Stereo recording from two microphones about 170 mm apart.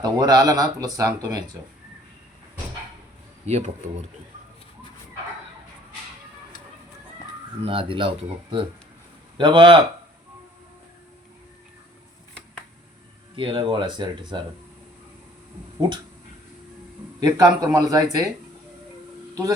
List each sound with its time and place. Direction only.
0.0 s speech: 20° right (ahead or behind)
3.4 s speech: 40° right (ahead or behind)
7.6 s speech: 30° right (ahead or behind)
13.3 s speech: 30° right (ahead or behind)
17.2 s speech: 25° right (ahead or behind)
19.3 s speech: 20° right (ahead or behind)